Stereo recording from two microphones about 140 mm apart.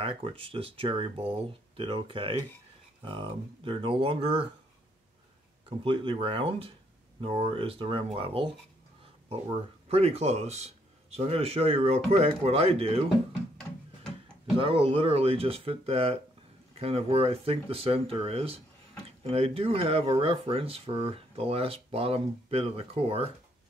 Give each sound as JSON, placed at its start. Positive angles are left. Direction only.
{"t": 0.0, "sound": "speech", "side_deg": -40}
{"t": 5.9, "sound": "speech", "side_deg": -40}
{"t": 9.8, "sound": "speech", "side_deg": -45}
{"t": 14.6, "sound": "speech", "side_deg": -40}